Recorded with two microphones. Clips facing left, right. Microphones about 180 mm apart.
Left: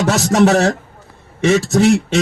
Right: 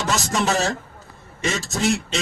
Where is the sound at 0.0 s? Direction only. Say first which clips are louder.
Left 10 dB; 65° left (ahead or behind).